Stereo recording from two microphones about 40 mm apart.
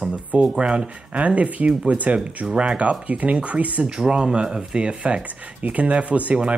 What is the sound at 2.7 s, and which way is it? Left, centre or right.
Speech, right.